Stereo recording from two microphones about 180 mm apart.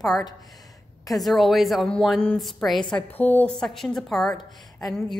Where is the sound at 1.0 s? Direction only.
Centre (ahead or behind).